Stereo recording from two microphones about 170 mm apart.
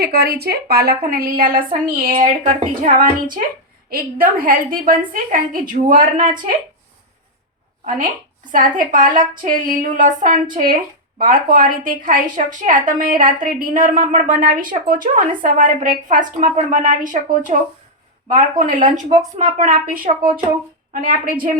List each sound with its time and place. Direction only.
0.0 s a woman's voice: 65° right (ahead or behind)
7.9 s a woman's voice: 50° right (ahead or behind)